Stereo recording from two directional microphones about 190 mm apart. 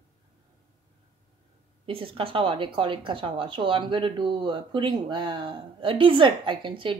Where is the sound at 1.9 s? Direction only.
30° right (ahead or behind).